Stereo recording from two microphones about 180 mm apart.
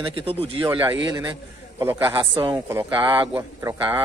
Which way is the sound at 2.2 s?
25° right (ahead or behind).